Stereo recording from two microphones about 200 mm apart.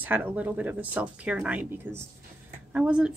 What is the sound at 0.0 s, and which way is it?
Speech, 10° right (ahead or behind).